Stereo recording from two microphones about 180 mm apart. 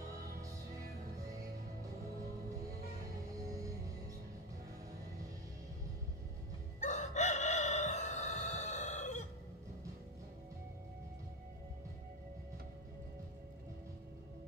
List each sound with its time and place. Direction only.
6.8 s crowing: 40° left (ahead or behind)